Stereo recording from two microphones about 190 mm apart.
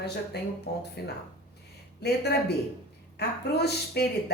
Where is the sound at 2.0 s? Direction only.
60° left (ahead or behind).